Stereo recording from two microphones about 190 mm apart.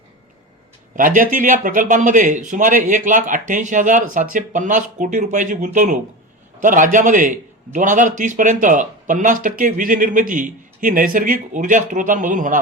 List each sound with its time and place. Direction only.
0.9 s a man's voice: 45° right (ahead or behind)